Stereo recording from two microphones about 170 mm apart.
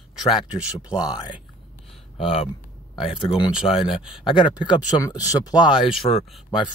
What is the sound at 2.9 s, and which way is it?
Speech, 30° left (ahead or behind).